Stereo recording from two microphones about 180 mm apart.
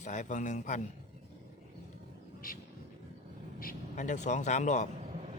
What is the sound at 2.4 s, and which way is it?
Speech, 55° left (ahead or behind).